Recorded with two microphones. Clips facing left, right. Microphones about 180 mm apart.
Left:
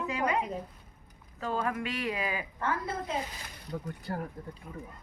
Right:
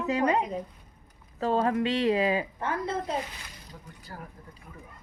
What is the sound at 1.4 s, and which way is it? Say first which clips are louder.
Speech: right 7 dB; 30° right (ahead or behind).